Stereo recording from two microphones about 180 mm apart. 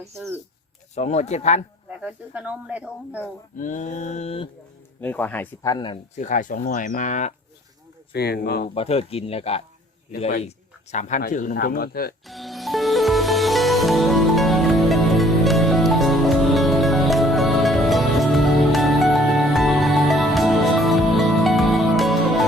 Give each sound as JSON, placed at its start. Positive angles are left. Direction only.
{"t": 0.9, "sound": "speech", "side_deg": 40}
{"t": 2.0, "sound": "speech", "side_deg": -5}
{"t": 3.6, "sound": "speech", "side_deg": 45}
{"t": 4.9, "sound": "speech", "side_deg": 10}
{"t": 5.7, "sound": "speech", "side_deg": 25}
{"t": 6.1, "sound": "speech", "side_deg": 45}
{"t": 8.1, "sound": "speech", "side_deg": 60}
{"t": 8.7, "sound": "speech", "side_deg": 35}
{"t": 11.2, "sound": "speech", "side_deg": 45}
{"t": 12.2, "sound": "music", "side_deg": 0}